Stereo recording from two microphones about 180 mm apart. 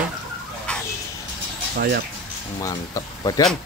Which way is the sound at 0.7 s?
5° left (ahead or behind).